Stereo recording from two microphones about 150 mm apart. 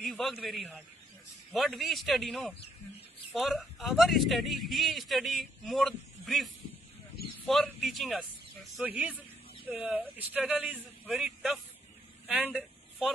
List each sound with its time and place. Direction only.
0.0 s a man's voice: centre (ahead or behind)